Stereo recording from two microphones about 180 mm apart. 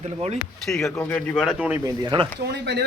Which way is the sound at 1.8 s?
25° right (ahead or behind).